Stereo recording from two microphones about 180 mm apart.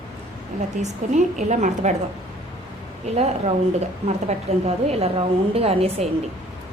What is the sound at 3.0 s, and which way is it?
A woman's voice, 35° right (ahead or behind).